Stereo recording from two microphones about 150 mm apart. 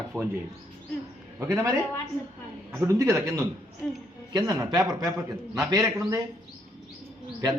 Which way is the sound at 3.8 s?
5° left (ahead or behind).